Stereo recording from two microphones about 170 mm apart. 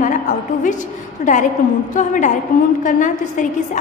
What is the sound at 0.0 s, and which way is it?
Speech, 50° left (ahead or behind).